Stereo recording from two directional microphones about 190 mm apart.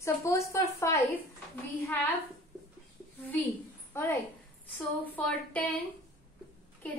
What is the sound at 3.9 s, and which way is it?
A woman's voice, 15° left (ahead or behind).